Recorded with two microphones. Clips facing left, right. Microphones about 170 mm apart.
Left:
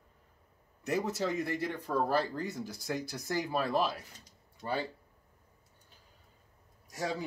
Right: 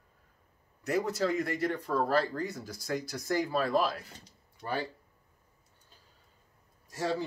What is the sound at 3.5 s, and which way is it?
Speech, 20° left (ahead or behind).